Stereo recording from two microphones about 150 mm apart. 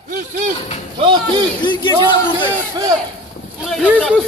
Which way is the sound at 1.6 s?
30° left (ahead or behind).